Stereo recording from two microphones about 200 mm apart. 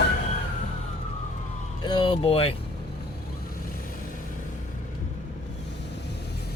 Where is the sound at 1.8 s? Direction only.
25° left (ahead or behind).